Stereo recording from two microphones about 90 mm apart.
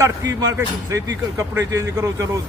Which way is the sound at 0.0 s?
40° right (ahead or behind).